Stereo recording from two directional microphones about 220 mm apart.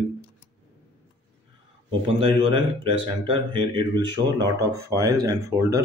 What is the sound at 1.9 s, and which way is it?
Speech, 25° right (ahead or behind).